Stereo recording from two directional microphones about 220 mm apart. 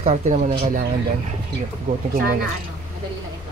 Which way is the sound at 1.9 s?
40° right (ahead or behind).